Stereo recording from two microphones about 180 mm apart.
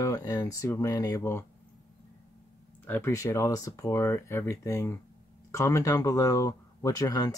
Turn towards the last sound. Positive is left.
turn(degrees=20)  # may be behind; listen again after turning